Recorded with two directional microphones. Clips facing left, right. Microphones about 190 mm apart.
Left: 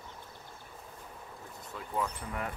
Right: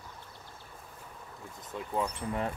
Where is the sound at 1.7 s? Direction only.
20° right (ahead or behind).